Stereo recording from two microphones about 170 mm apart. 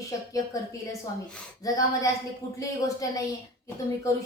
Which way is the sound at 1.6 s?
20° left (ahead or behind).